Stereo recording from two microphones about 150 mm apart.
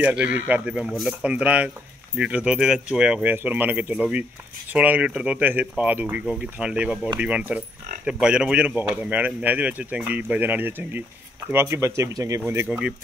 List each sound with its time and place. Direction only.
0.0 s speech: 10° right (ahead or behind)
12.6 s speech: 5° right (ahead or behind)